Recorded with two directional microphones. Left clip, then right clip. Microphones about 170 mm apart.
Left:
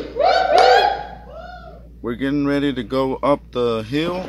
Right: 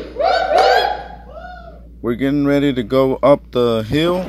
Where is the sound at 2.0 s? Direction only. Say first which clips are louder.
Right 4 dB; 30° right (ahead or behind).